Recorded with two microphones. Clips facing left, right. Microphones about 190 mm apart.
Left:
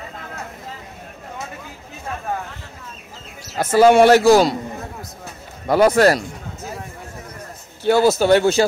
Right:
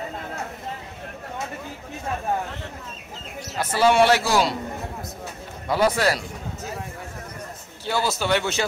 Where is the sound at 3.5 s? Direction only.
45° left (ahead or behind).